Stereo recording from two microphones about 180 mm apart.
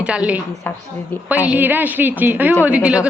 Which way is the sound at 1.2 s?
10° right (ahead or behind).